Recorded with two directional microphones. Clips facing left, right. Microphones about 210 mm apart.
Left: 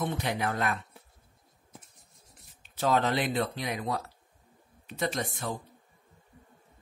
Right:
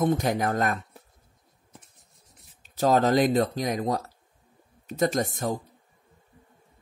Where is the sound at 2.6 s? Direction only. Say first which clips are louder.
Right 5 dB; 40° right (ahead or behind).